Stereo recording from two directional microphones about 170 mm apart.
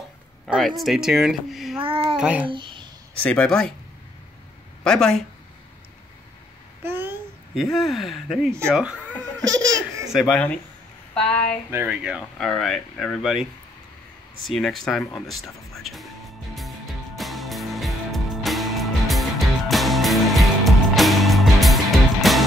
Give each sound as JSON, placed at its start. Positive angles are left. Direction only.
{"t": 0.5, "sound": "speech", "side_deg": 0}
{"t": 1.8, "sound": "a child's voice", "side_deg": -30}
{"t": 2.1, "sound": "child singing", "side_deg": -5}
{"t": 2.4, "sound": "a sound", "side_deg": -30}
{"t": 3.3, "sound": "speech", "side_deg": 5}
{"t": 4.8, "sound": "speech", "side_deg": 5}
{"t": 6.8, "sound": "babbling", "side_deg": -15}
{"t": 7.5, "sound": "speech", "side_deg": 0}
{"t": 9.4, "sound": "laughter", "side_deg": -20}
{"t": 10.1, "sound": "speech", "side_deg": 0}
{"t": 11.7, "sound": "speech", "side_deg": -10}
{"t": 16.5, "sound": "music", "side_deg": 0}